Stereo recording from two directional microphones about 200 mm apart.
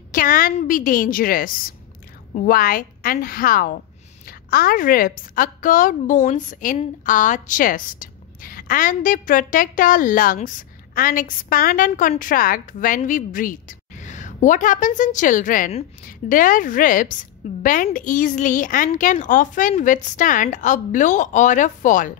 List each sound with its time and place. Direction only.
0.1 s a woman's voice: 45° left (ahead or behind)